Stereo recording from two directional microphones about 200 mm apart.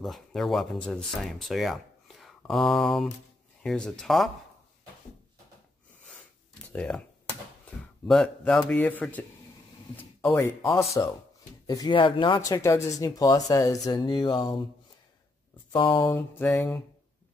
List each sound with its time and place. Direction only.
0.0 s speech: centre (ahead or behind)
6.7 s speech: 5° left (ahead or behind)
8.1 s speech: 5° left (ahead or behind); by 14.6 s 20° left (ahead or behind)
15.7 s speech: 20° left (ahead or behind)